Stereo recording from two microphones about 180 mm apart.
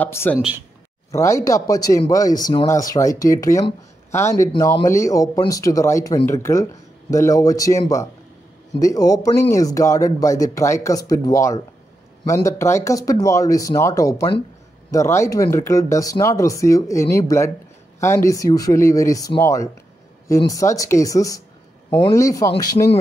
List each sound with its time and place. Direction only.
0.0 s speech: 10° left (ahead or behind)